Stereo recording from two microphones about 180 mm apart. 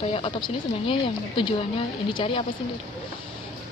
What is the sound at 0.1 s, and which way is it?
Speech, 30° left (ahead or behind).